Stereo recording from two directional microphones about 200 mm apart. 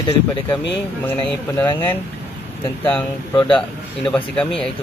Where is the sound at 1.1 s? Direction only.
10° left (ahead or behind).